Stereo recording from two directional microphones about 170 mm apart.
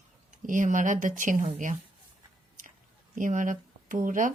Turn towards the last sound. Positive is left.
turn(degrees=-50)  # may be behind; listen again after turning